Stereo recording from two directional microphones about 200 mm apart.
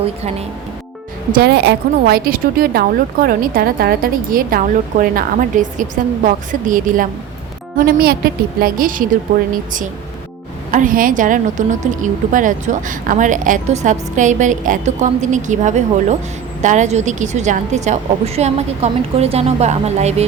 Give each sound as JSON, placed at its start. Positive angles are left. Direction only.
{"t": 1.3, "sound": "a woman's voice", "side_deg": -55}
{"t": 10.7, "sound": "a woman's voice", "side_deg": -40}